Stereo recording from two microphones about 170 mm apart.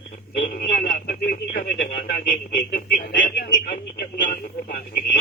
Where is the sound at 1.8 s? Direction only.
55° left (ahead or behind).